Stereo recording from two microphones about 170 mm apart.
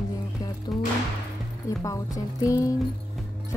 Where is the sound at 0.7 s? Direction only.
Centre (ahead or behind).